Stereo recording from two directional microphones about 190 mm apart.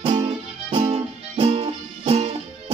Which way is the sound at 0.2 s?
25° right (ahead or behind).